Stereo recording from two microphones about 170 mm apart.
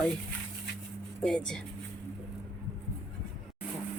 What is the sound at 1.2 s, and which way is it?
Speech, 5° left (ahead or behind).